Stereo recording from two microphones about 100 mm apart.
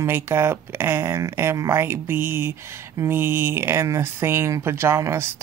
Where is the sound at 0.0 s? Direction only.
25° right (ahead or behind).